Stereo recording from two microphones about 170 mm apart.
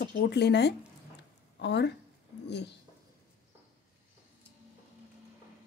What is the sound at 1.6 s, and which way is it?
Speech, 90° left.